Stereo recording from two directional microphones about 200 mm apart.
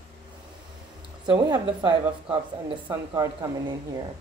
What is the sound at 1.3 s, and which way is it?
A woman's voice, 25° right (ahead or behind).